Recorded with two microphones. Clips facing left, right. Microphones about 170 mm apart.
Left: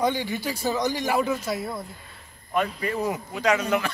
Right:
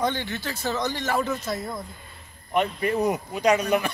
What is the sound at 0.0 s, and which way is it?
A man's voice, 10° left (ahead or behind).